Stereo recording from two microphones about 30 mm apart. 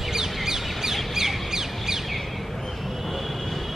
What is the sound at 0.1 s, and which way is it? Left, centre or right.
Bird, centre.